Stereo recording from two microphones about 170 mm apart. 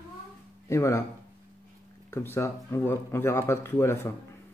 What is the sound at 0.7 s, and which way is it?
Speech, 15° left (ahead or behind).